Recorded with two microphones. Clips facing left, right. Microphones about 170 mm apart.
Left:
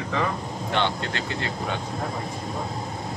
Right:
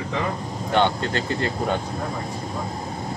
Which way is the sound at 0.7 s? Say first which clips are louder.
Right 6 dB; 45° right (ahead or behind).